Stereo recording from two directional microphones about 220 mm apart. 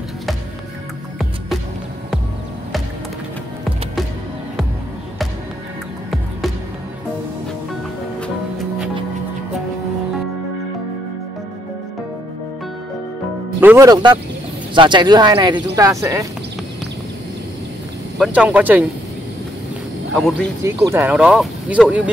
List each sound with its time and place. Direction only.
8.5 s music: 5° right (ahead or behind)
13.6 s speech: 10° right (ahead or behind)
18.2 s speech: 5° right (ahead or behind)
20.2 s speech: centre (ahead or behind)
20.6 s speech: 10° right (ahead or behind)